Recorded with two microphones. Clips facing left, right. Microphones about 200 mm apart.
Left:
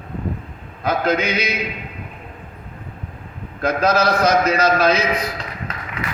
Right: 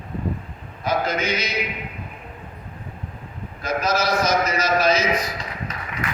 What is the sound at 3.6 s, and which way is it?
A man's voice, 60° left (ahead or behind).